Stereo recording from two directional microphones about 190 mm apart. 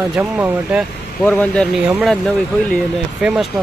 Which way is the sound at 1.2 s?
5° left (ahead or behind).